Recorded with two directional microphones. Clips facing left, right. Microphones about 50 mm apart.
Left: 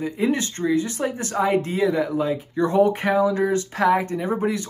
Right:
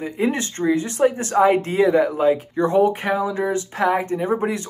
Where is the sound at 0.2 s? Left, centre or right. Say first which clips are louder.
Right 2 dB; right.